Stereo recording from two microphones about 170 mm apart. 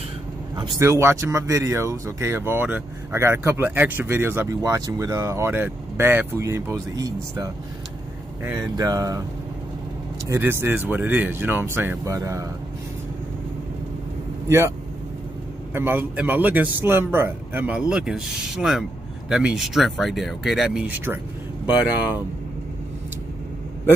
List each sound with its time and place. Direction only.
0.6 s speech: 15° right (ahead or behind)
10.3 s speech: 15° right (ahead or behind)
15.7 s speech: 10° right (ahead or behind)